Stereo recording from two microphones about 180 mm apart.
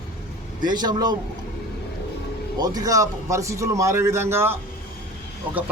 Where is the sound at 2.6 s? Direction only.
20° right (ahead or behind).